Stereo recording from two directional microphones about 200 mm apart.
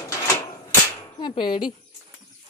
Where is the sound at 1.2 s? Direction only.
20° left (ahead or behind).